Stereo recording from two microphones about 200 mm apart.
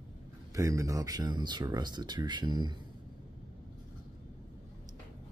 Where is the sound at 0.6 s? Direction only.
15° right (ahead or behind).